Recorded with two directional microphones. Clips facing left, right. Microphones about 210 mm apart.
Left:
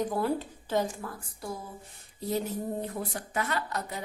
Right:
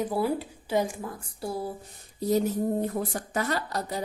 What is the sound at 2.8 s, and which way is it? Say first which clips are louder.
Speech: right 5 dB; 40° right (ahead or behind).